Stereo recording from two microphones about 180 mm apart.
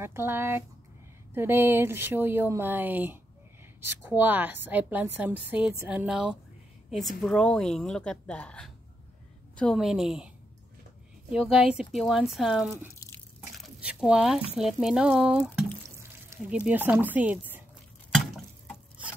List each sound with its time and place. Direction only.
0.0 s a woman's voice: 15° right (ahead or behind)
11.3 s speech: 5° right (ahead or behind)
12.9 s drip: 15° left (ahead or behind)
13.6 s speech: 5° right (ahead or behind)
18.1 s a sound: centre (ahead or behind)